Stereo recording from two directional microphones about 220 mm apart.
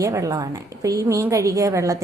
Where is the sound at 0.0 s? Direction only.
15° right (ahead or behind).